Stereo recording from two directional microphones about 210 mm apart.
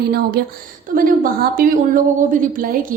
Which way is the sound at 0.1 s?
45° right (ahead or behind).